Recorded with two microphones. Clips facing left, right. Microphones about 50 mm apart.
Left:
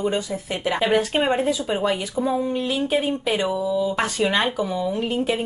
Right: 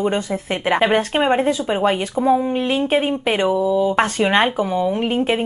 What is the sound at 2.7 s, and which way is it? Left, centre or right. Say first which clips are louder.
Speech: right 4 dB; right.